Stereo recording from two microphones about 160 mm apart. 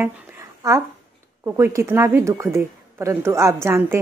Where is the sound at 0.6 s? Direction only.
20° right (ahead or behind).